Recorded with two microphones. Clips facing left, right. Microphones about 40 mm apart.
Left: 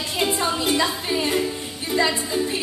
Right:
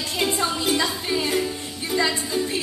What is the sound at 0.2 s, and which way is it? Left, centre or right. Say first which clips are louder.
Music: left 1 dB; centre.